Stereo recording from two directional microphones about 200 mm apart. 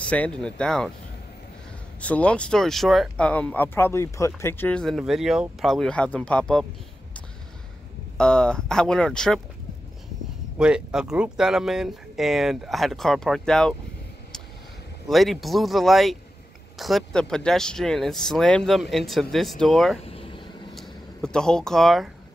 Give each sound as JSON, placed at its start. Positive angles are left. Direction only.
{"t": 0.0, "sound": "speech", "side_deg": 5}
{"t": 2.0, "sound": "speech", "side_deg": 5}
{"t": 8.2, "sound": "speech", "side_deg": 5}
{"t": 10.6, "sound": "speech", "side_deg": -5}
{"t": 15.0, "sound": "speech", "side_deg": 0}
{"t": 20.0, "sound": "vehicle", "side_deg": 30}
{"t": 20.7, "sound": "speech", "side_deg": 0}